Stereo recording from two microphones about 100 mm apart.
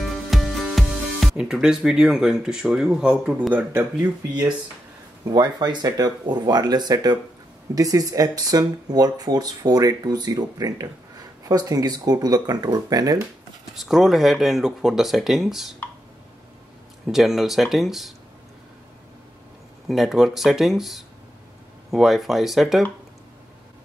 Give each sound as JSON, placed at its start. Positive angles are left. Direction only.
{"t": 0.0, "sound": "speech", "side_deg": 0}
{"t": 5.2, "sound": "speech", "side_deg": -45}
{"t": 13.7, "sound": "speech", "side_deg": 0}
{"t": 17.1, "sound": "speech", "side_deg": 0}
{"t": 19.9, "sound": "speech", "side_deg": 0}